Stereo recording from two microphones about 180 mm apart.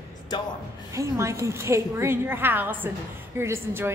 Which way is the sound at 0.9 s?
15° right (ahead or behind).